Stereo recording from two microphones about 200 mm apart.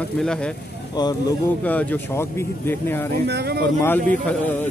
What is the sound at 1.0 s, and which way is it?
Speech, 20° left (ahead or behind).